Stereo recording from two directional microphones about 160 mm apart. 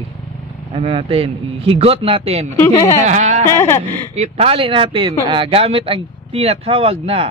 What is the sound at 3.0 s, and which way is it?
Speech, 45° right (ahead or behind).